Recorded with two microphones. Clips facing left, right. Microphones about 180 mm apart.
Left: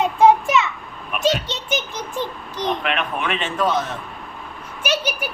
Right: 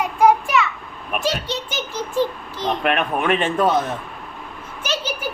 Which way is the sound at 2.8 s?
45° right (ahead or behind).